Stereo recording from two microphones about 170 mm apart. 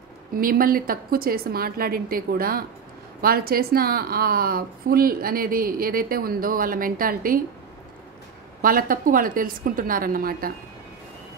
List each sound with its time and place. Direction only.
0.4 s a woman's voice: 55° right (ahead or behind)
8.6 s a woman's voice: 55° right (ahead or behind)